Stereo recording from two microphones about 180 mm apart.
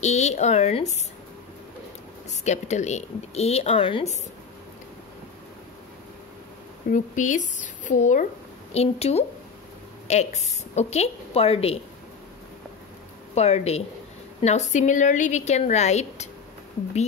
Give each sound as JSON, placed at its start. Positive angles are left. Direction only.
{"t": 0.0, "sound": "a woman's voice", "side_deg": 40}
{"t": 2.4, "sound": "a woman's voice", "side_deg": 40}
{"t": 6.9, "sound": "a woman's voice", "side_deg": 45}
{"t": 13.3, "sound": "a woman's voice", "side_deg": 35}